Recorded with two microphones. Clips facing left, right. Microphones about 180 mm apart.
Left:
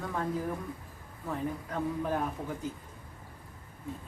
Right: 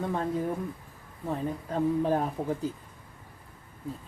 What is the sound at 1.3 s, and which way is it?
Speech, 30° right (ahead or behind).